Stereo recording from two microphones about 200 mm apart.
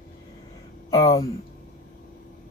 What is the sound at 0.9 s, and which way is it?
Speech, 15° left (ahead or behind).